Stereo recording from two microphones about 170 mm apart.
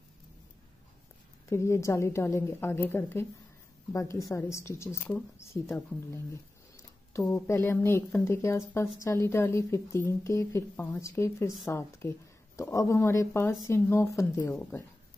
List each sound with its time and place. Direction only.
1.5 s speech: 15° left (ahead or behind)